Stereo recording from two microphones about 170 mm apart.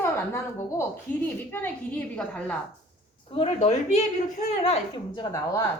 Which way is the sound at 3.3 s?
35° left (ahead or behind).